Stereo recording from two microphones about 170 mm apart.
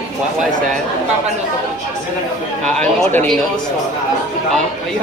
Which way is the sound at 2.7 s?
5° left (ahead or behind).